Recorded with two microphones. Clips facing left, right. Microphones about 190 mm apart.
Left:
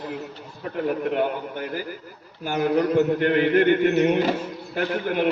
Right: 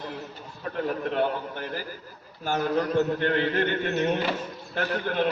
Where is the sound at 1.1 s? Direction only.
15° left (ahead or behind).